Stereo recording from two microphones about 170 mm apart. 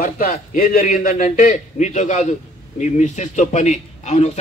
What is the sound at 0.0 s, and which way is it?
A man's voice, 55° left (ahead or behind).